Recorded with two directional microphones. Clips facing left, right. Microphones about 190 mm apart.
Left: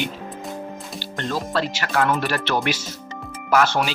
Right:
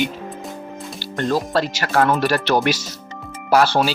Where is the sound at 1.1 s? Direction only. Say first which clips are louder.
Right 5 dB; 40° right (ahead or behind).